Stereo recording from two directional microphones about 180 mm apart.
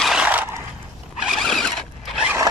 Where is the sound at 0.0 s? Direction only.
5° right (ahead or behind).